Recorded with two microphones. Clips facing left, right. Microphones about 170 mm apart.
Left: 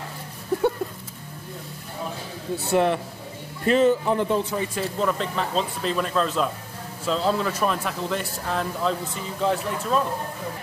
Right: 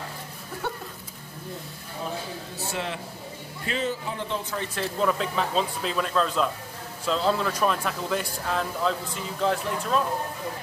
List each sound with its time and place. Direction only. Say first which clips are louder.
2.7 s a man's voice: left 12 dB; 55° left (ahead or behind)
4.6 s speech: left 2 dB; 5° left (ahead or behind)